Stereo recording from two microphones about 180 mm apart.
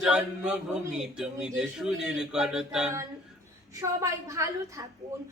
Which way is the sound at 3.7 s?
15° right (ahead or behind).